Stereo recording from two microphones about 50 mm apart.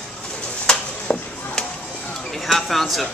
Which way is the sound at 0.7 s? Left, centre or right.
Centre.